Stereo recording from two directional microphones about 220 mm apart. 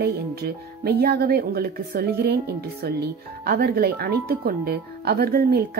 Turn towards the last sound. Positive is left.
turn(degrees=-45)  # may be behind; listen again after turning